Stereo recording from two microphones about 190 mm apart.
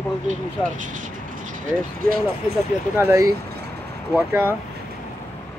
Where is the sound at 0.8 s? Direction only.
45° right (ahead or behind).